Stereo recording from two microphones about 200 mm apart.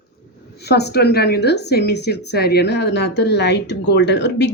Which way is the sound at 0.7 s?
55° left (ahead or behind).